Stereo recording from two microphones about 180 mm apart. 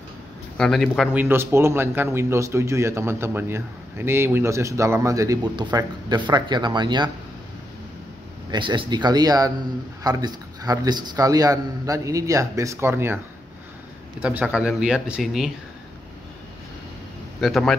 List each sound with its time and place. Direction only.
0.6 s speech: 5° left (ahead or behind)
1.1 s speech: 15° right (ahead or behind)
8.5 s a man's voice: 25° right (ahead or behind)
14.2 s speech: 5° right (ahead or behind)
17.4 s speech: centre (ahead or behind)